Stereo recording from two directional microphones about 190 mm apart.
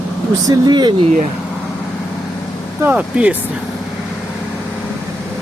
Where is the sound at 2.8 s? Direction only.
5° right (ahead or behind).